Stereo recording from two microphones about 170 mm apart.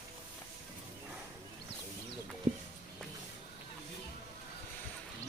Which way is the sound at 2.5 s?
40° right (ahead or behind).